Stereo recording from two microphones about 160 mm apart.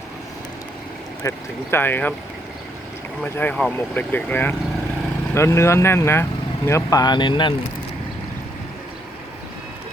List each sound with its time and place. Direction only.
1.2 s speech: 20° left (ahead or behind)
3.3 s speech: 10° left (ahead or behind); by 7.5 s 30° left (ahead or behind)